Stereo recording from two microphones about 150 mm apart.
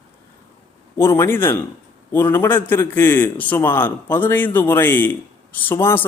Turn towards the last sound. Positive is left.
turn(degrees=15)  # may be behind; listen again after turning